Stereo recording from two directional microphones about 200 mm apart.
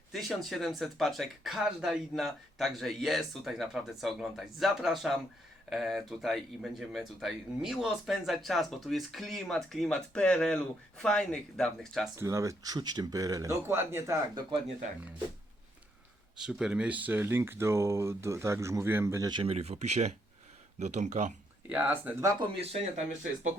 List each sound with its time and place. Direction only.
0.1 s speech: centre (ahead or behind)
12.1 s speech: 15° right (ahead or behind)
16.4 s speech: 5° right (ahead or behind); by 21.3 s 35° right (ahead or behind)
21.7 s speech: 10° right (ahead or behind)
22.5 s speech: 30° right (ahead or behind)